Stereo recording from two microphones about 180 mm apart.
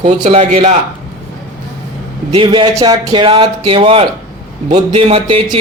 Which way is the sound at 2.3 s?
30° right (ahead or behind).